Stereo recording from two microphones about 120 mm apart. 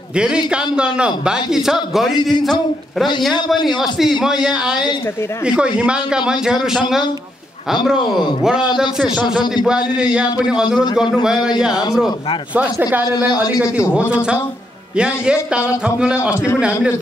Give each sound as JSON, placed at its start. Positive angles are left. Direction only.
{"t": 0.1, "sound": "a man's voice", "side_deg": -10}
{"t": 3.6, "sound": "a man's voice", "side_deg": 0}
{"t": 7.8, "sound": "a man's voice", "side_deg": -5}
{"t": 10.4, "sound": "a man's voice", "side_deg": -5}
{"t": 12.5, "sound": "a man's voice", "side_deg": -15}
{"t": 15.5, "sound": "a man's voice", "side_deg": -10}